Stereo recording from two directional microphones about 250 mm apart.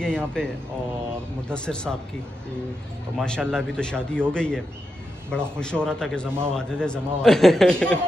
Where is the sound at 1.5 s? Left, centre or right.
Centre.